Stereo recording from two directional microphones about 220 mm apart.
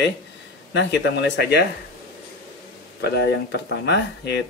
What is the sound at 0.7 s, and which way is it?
Speech, 50° left (ahead or behind).